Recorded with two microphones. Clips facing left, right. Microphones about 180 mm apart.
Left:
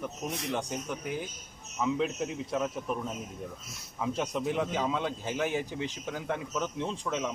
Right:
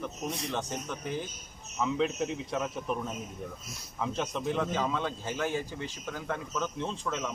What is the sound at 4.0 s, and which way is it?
A man's voice, 10° left (ahead or behind).